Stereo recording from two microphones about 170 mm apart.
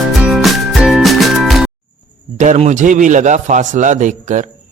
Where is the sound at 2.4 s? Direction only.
45° right (ahead or behind).